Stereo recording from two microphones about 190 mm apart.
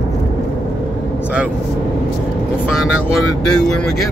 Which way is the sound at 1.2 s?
5° right (ahead or behind).